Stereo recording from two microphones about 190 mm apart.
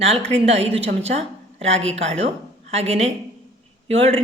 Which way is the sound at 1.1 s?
35° right (ahead or behind).